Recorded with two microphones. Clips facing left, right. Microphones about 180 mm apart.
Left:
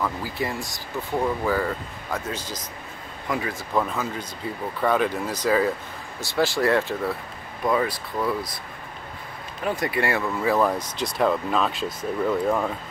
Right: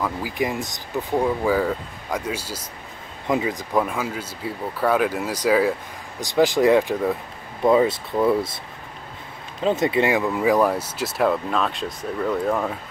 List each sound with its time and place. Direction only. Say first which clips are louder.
0.0 s speech: right 3 dB; 15° right (ahead or behind)
3.3 s speech: right 5 dB; 20° right (ahead or behind)
9.6 s speech: right 5 dB; 25° right (ahead or behind); by 12.7 s centre (ahead or behind)